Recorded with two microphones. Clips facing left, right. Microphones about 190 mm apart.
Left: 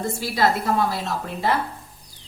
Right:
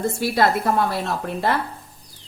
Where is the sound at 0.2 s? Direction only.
55° right (ahead or behind).